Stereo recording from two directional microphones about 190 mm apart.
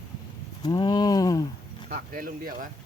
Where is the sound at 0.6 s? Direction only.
20° left (ahead or behind).